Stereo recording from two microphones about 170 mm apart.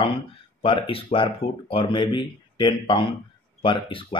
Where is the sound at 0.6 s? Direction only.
30° left (ahead or behind).